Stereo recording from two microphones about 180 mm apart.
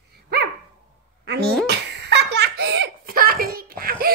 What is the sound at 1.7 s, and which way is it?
Laughter, 70° right (ahead or behind).